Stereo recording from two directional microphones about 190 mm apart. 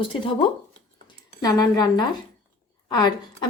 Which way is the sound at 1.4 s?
20° left (ahead or behind).